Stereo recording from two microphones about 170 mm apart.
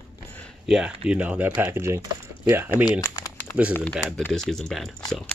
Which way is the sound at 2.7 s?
25° left (ahead or behind).